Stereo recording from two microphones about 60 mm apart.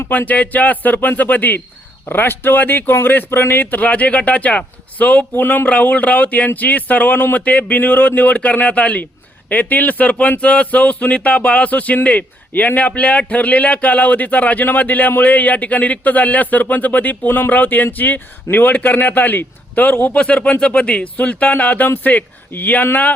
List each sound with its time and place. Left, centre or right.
0.1 s speech: left
20.1 s speech: centre